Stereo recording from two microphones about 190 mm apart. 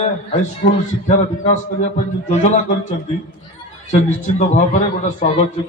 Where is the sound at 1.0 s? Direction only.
40° left (ahead or behind).